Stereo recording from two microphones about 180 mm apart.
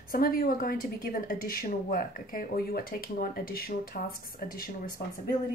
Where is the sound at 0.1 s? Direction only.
55° left (ahead or behind).